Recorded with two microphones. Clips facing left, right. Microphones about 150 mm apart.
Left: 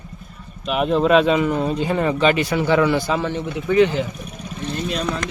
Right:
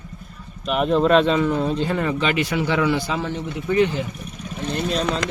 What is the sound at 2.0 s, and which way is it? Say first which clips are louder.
A man's voice: left 4 dB; 30° left (ahead or behind).